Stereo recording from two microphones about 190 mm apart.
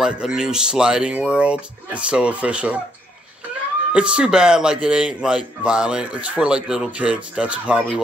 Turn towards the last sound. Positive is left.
turn(degrees=-5)  # may be behind; listen again after turning